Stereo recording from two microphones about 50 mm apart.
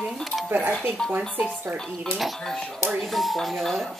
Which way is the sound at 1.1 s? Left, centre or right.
Right.